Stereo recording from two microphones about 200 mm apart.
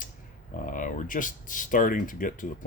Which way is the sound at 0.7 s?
40° left (ahead or behind).